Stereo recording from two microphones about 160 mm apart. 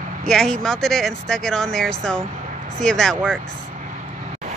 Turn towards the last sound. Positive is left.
turn(degrees=5)  # may be behind; listen again after turning